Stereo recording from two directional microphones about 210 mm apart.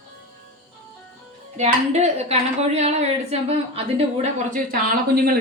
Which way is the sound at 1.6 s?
35° right (ahead or behind).